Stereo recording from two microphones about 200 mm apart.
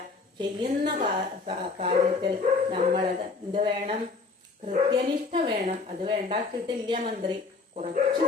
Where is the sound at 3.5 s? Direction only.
25° right (ahead or behind).